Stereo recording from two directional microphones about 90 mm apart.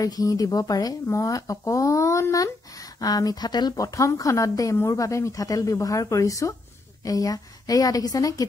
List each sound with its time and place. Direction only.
0.0 s a woman's voice: 40° left (ahead or behind)